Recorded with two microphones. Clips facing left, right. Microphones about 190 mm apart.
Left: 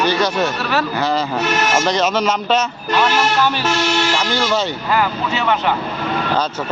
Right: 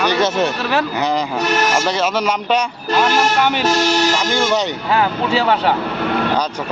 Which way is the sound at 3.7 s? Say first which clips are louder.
Right 2 dB; 40° right (ahead or behind).